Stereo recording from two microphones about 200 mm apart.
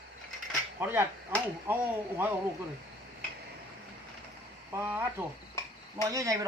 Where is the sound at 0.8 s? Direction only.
10° right (ahead or behind).